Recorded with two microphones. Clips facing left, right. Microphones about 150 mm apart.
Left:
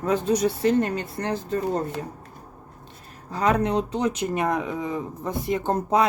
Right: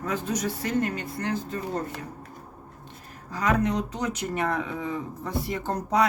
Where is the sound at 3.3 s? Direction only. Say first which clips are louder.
Left 3 dB; 30° left (ahead or behind).